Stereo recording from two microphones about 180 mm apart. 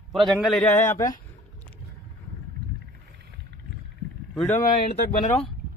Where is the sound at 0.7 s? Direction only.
15° left (ahead or behind).